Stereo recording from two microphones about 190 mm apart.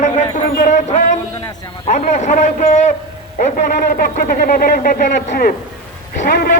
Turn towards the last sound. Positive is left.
turn(degrees=55)  # may be behind; listen again after turning